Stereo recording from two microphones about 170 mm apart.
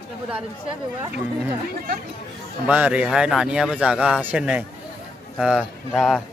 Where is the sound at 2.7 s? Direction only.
5° right (ahead or behind).